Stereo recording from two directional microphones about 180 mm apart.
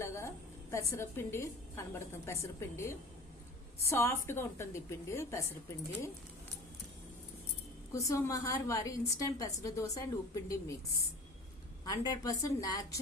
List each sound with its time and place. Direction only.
0.0 s a woman's voice: 15° left (ahead or behind)
7.9 s a woman's voice: 20° left (ahead or behind)
11.9 s a woman's voice: 20° left (ahead or behind)